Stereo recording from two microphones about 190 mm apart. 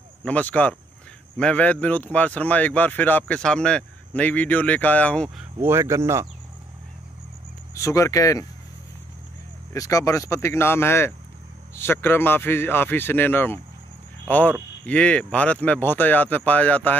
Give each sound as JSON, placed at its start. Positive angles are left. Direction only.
{"t": 0.2, "sound": "speech", "side_deg": 10}
{"t": 5.6, "sound": "speech", "side_deg": -15}
{"t": 7.7, "sound": "speech", "side_deg": 15}
{"t": 9.7, "sound": "speech", "side_deg": 15}